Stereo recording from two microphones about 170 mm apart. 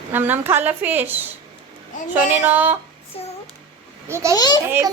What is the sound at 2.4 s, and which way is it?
Speech, 10° right (ahead or behind).